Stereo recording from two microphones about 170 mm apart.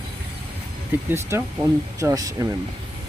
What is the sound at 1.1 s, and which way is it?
Speech, 15° right (ahead or behind).